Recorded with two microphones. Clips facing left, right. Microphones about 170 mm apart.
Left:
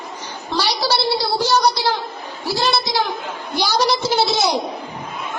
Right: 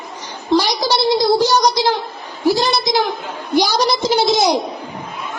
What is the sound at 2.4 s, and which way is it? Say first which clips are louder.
A woman's voice: right 5 dB; 15° right (ahead or behind).